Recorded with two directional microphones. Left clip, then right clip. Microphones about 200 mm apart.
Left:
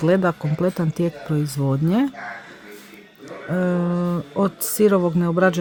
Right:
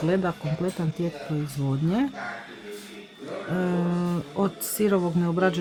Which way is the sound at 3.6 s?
25° left (ahead or behind).